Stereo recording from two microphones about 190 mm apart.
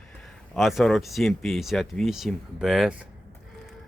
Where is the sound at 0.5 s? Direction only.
Centre (ahead or behind).